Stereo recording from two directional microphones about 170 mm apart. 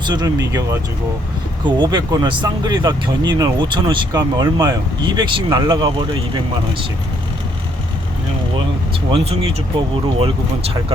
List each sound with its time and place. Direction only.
0.0 s speech: 25° right (ahead or behind)
1.8 s speech: 25° right (ahead or behind)
9.1 s speech: 35° right (ahead or behind)